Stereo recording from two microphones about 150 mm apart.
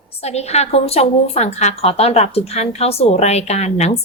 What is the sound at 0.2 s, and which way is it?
A woman's voice, 45° left (ahead or behind).